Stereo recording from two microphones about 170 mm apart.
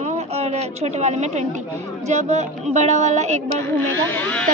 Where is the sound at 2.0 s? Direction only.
40° right (ahead or behind).